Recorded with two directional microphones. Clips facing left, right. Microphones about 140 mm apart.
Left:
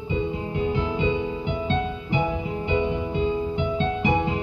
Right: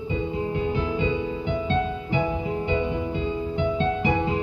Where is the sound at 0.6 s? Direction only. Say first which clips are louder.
Left 3 dB; 20° left (ahead or behind).